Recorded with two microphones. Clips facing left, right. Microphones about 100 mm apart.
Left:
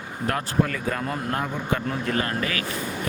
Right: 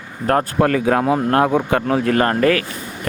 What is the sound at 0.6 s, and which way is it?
Speech, 90° right.